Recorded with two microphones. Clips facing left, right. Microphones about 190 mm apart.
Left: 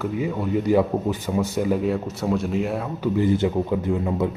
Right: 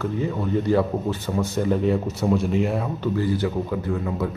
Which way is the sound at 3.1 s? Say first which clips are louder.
Left 5 dB; 20° left (ahead or behind).